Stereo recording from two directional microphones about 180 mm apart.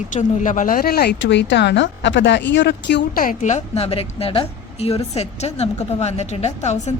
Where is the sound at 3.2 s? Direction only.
40° left (ahead or behind).